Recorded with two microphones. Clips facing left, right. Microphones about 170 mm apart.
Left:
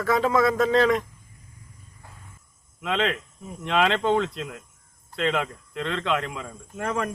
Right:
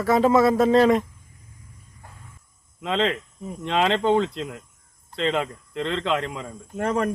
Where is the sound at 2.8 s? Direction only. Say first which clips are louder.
Right 2 dB; 30° right (ahead or behind).